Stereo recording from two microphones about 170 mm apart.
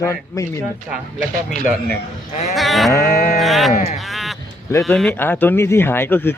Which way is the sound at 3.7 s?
40° left (ahead or behind).